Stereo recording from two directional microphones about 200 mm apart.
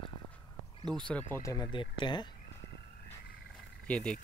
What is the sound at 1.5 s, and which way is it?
Speech, 20° left (ahead or behind).